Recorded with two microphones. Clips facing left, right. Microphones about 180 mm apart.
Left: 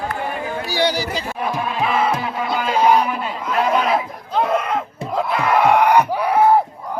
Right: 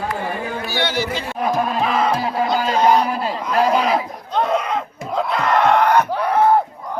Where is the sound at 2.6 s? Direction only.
10° left (ahead or behind).